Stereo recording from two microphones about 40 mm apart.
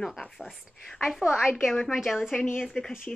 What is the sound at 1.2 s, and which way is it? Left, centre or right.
A woman's voice, centre.